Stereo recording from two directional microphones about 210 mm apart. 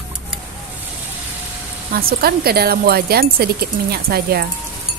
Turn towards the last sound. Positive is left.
turn(degrees=-45)  # may be behind; listen again after turning